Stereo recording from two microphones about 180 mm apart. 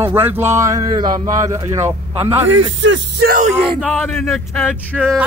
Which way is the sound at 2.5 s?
90° right.